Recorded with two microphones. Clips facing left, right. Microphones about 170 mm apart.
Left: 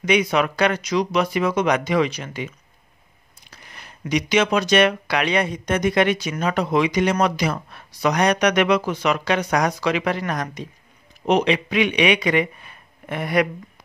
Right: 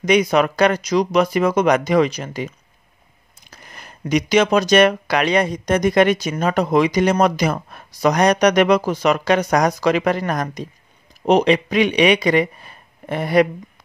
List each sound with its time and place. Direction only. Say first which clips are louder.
0.0 s speech: right 4 dB; 40° right (ahead or behind)